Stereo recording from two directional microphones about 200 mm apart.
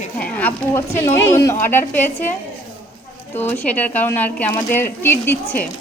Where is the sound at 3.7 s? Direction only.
10° left (ahead or behind).